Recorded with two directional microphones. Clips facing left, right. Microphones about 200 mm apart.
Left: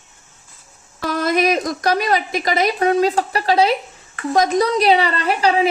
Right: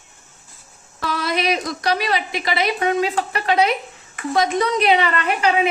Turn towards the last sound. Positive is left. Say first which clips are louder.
# left 2 dB
turn(degrees=35)  # may be behind; listen again after turning